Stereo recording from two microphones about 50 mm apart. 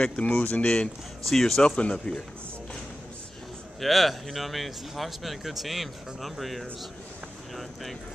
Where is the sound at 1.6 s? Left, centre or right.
Left.